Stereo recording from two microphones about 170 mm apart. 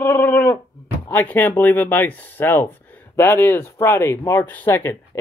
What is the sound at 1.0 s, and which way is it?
Speech, 10° left (ahead or behind).